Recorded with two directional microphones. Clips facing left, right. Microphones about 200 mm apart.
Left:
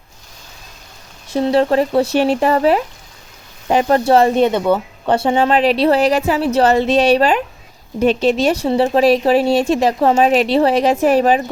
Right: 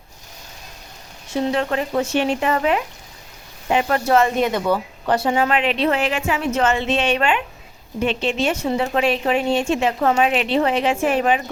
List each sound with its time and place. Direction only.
1.3 s speech: 35° left (ahead or behind)